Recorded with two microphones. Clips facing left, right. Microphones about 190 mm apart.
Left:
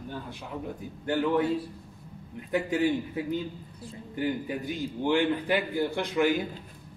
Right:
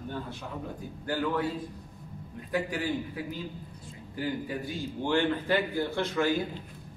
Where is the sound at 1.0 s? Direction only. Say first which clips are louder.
Left 4 dB; 20° left (ahead or behind).